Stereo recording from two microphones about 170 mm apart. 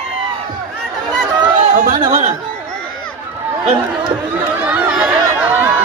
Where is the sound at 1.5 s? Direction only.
45° right (ahead or behind).